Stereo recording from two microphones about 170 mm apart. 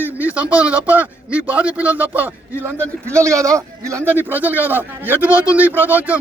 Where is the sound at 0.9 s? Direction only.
10° right (ahead or behind).